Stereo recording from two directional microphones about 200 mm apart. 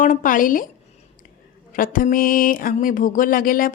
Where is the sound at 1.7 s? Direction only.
45° left (ahead or behind).